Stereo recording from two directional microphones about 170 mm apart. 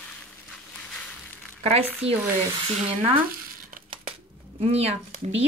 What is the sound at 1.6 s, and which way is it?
Speech, 35° right (ahead or behind).